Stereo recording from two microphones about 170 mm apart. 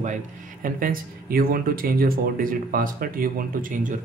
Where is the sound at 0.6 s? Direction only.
55° right (ahead or behind).